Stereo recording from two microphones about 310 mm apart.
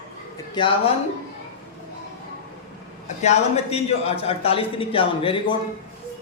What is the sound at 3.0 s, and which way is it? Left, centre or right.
A man's voice, left.